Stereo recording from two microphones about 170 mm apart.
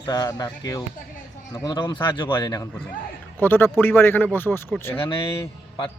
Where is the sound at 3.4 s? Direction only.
10° left (ahead or behind).